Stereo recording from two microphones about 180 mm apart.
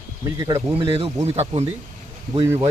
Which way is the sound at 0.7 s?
30° right (ahead or behind).